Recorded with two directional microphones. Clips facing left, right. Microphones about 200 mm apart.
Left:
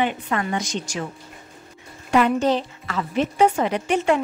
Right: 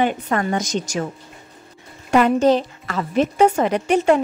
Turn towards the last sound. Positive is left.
turn(degrees=-45)  # may be behind; listen again after turning